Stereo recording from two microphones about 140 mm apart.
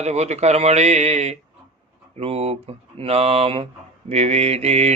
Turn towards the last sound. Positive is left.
turn(degrees=-50)  # may be behind; listen again after turning